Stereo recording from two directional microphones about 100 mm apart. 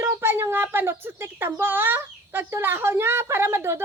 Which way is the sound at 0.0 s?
25° right (ahead or behind).